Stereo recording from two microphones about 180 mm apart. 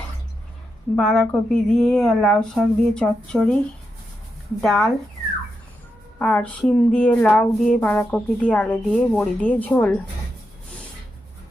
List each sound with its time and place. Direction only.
0.9 s speech: 5° left (ahead or behind)
4.6 s speech: centre (ahead or behind)
6.1 s speech: 5° left (ahead or behind)